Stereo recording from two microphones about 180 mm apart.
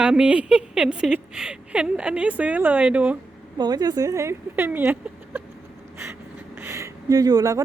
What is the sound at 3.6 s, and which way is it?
Speech, 20° right (ahead or behind).